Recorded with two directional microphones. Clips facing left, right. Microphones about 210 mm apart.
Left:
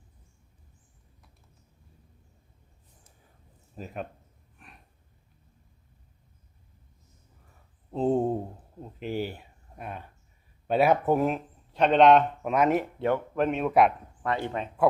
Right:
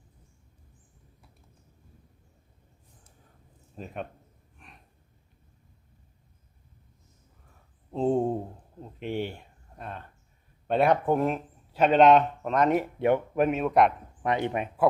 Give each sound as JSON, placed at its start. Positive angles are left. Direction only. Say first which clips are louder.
{"t": 3.8, "sound": "speech", "louder": "even", "side_deg": 0}
{"t": 4.6, "sound": "a sound", "louder": "even", "side_deg": 0}
{"t": 7.9, "sound": "a sound", "louder": "even", "side_deg": 0}
{"t": 8.8, "sound": "speech", "louder": "even", "side_deg": 0}
{"t": 13.0, "sound": "speech", "louder": "right 2 dB", "side_deg": -15}
{"t": 14.2, "sound": "speech", "louder": "right 3 dB", "side_deg": -20}